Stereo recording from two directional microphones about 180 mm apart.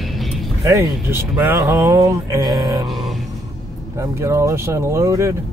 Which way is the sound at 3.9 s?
15° right (ahead or behind).